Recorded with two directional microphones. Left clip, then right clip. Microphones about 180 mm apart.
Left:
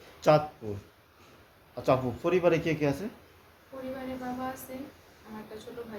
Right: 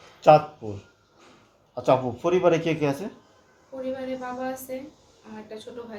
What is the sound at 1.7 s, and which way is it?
Speech, 20° left (ahead or behind).